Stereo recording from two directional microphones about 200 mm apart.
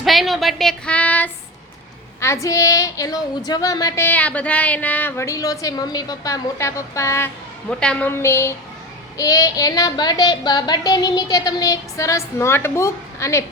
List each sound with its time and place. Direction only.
0.0 s speech: centre (ahead or behind)